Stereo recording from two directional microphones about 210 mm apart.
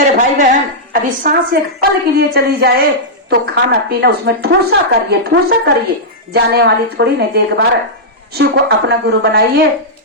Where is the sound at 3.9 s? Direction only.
50° right (ahead or behind).